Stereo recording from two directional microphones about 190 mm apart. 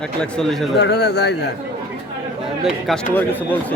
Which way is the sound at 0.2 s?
5° left (ahead or behind).